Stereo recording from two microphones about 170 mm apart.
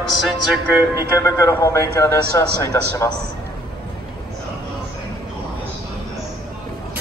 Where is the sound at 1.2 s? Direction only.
20° left (ahead or behind).